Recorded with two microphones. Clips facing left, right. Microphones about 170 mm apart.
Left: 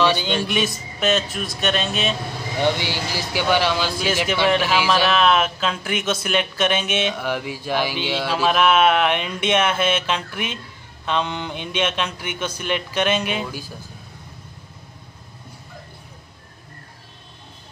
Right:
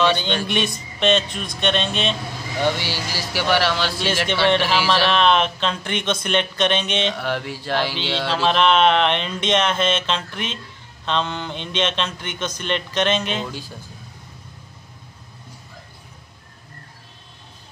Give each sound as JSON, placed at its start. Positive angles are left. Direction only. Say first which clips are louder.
{"t": 0.5, "sound": "speech", "louder": "even", "side_deg": 5}
{"t": 2.6, "sound": "a man's voice", "louder": "left 1 dB", "side_deg": 20}